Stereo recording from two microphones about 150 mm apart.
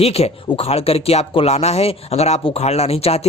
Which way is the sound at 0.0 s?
40° left (ahead or behind).